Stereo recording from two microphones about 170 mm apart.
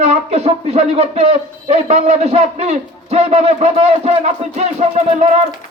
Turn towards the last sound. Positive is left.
turn(degrees=-40)  # may be behind; listen again after turning